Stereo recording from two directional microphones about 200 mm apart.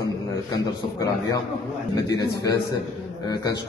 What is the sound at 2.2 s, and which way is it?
A man's voice, 20° left (ahead or behind).